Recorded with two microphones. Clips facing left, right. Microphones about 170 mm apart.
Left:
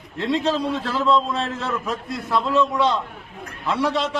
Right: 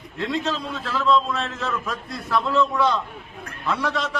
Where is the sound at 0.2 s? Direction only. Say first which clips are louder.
Left 4 dB; 30° left (ahead or behind).